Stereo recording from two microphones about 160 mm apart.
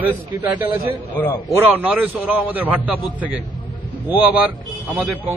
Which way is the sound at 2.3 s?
10° right (ahead or behind).